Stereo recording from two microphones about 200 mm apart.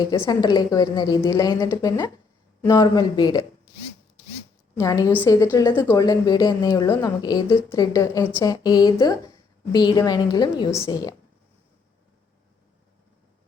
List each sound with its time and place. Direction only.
0.0 s a woman's voice: 20° left (ahead or behind)
4.8 s a woman's voice: 15° left (ahead or behind)